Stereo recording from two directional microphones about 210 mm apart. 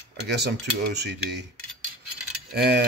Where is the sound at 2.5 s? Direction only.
50° right (ahead or behind).